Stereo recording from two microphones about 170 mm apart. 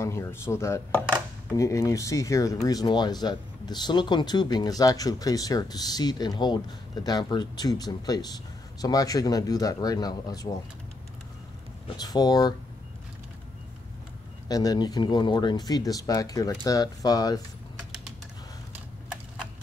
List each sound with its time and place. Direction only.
0.0 s speech: 15° left (ahead or behind)
12.0 s speech: 25° left (ahead or behind)
14.5 s speech: 20° left (ahead or behind)